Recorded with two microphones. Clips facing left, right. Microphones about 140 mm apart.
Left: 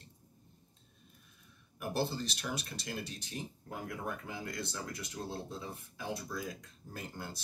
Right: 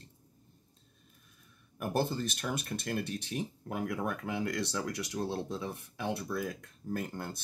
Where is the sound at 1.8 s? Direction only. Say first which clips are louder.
Right 3 dB; 50° right (ahead or behind).